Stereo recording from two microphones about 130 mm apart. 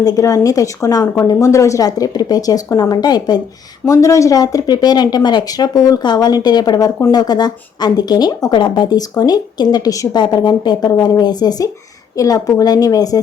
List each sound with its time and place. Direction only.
0.0 s speech: 30° left (ahead or behind)